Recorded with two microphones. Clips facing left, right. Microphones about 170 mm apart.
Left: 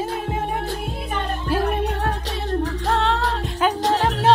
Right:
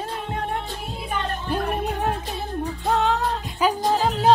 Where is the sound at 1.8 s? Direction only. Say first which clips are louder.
Left 1 dB; 10° right (ahead or behind).